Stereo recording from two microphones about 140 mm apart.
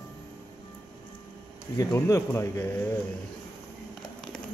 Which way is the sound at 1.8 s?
20° left (ahead or behind).